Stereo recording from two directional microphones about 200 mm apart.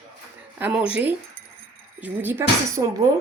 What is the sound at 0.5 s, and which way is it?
Speech, 5° right (ahead or behind).